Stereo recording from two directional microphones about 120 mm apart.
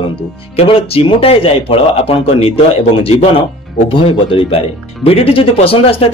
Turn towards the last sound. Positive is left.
turn(degrees=50)  # may be behind; listen again after turning